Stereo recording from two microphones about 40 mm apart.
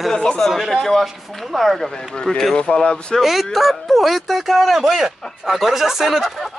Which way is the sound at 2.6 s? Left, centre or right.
Left.